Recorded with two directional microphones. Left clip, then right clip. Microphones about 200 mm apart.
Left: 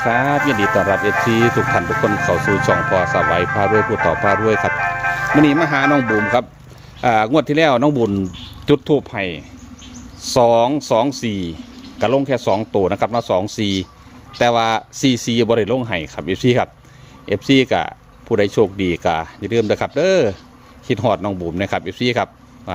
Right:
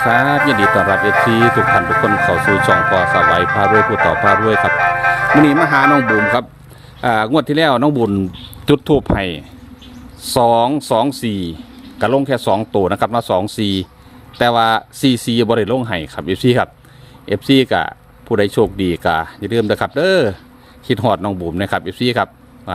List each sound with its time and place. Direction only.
0.0 s speech: 20° right (ahead or behind)
8.6 s speech: 30° right (ahead or behind)
10.2 s a man's voice: 15° right (ahead or behind)